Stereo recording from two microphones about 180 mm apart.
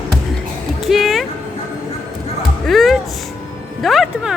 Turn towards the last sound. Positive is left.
turn(degrees=0)  # may be behind; listen again after turning